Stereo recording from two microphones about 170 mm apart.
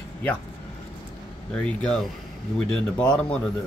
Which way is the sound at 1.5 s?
5° left (ahead or behind).